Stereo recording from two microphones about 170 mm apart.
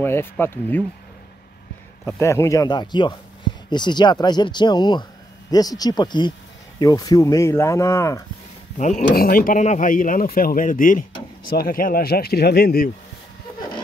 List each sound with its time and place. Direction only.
0.0 s speech: 15° left (ahead or behind)
2.0 s speech: 15° left (ahead or behind)
8.7 s speech: 45° left (ahead or behind)
9.1 s speech: 60° left (ahead or behind)